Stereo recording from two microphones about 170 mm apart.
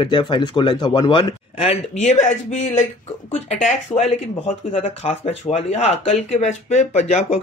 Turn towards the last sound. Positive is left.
turn(degrees=40)  # may be behind; listen again after turning